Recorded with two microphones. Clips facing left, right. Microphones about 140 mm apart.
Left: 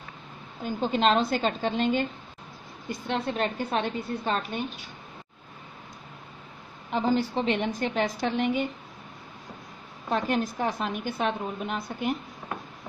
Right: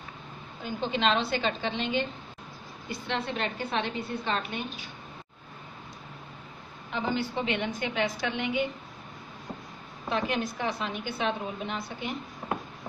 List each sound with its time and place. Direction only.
0.7 s a woman's voice: 40° left (ahead or behind)
6.9 s a woman's voice: 40° left (ahead or behind)
10.0 s a woman's voice: 45° left (ahead or behind)